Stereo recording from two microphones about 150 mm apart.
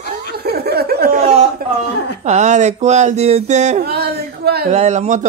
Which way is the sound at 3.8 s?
90° right.